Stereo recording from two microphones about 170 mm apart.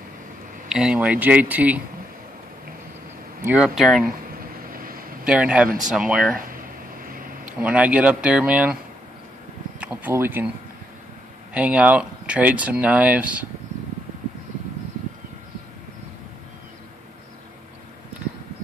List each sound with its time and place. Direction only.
0.7 s speech: 5° right (ahead or behind)
3.4 s speech: 5° right (ahead or behind)
4.7 s a sound: 55° right (ahead or behind)
5.2 s speech: 5° right (ahead or behind)
6.3 s a sound: 55° right (ahead or behind)
7.6 s speech: 10° right (ahead or behind)
9.8 s speech: 10° right (ahead or behind)
11.5 s speech: 10° right (ahead or behind)